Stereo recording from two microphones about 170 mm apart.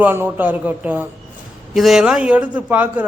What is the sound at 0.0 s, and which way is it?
A woman's voice, 10° right (ahead or behind).